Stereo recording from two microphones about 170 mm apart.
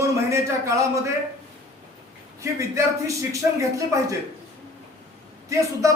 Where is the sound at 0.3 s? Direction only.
15° right (ahead or behind).